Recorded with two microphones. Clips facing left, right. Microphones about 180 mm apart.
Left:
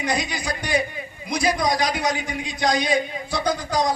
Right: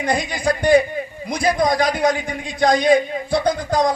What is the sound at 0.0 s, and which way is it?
A man's voice, 50° right (ahead or behind).